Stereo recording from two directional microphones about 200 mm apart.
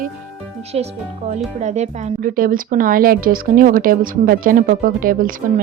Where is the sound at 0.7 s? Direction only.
30° right (ahead or behind).